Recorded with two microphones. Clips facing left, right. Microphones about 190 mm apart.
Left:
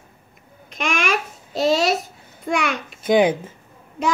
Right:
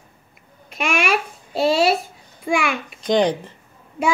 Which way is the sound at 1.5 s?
5° right (ahead or behind).